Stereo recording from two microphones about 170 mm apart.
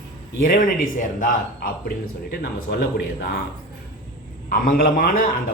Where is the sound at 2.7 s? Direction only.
75° left (ahead or behind).